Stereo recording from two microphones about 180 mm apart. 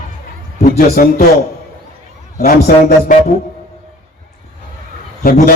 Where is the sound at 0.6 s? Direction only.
45° left (ahead or behind).